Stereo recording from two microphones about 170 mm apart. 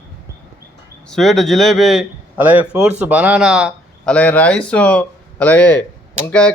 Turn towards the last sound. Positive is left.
turn(degrees=5)  # may be behind; listen again after turning